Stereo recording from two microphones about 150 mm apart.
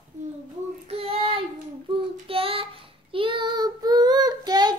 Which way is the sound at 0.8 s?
40° right (ahead or behind).